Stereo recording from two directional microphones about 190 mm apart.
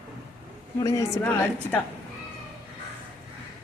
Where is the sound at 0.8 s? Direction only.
15° left (ahead or behind).